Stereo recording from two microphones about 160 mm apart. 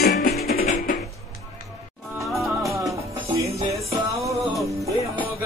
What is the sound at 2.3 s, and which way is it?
Music, centre (ahead or behind).